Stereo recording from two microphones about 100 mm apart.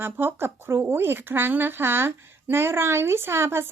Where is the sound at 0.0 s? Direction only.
20° right (ahead or behind).